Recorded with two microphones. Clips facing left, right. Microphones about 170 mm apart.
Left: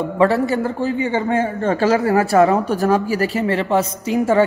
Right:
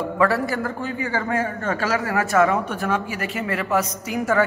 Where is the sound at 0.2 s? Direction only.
25° left (ahead or behind).